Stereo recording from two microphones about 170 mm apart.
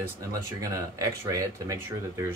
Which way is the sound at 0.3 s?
20° right (ahead or behind).